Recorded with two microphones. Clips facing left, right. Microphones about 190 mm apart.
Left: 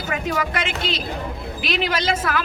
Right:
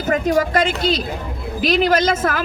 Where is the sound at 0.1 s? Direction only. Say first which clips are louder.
Right 8 dB; 40° right (ahead or behind).